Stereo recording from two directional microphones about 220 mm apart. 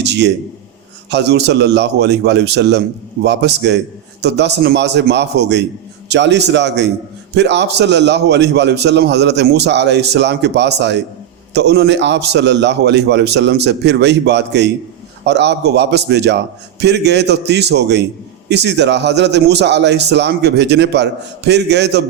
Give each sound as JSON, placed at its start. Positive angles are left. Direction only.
{"t": 0.0, "sound": "a man's voice", "side_deg": -50}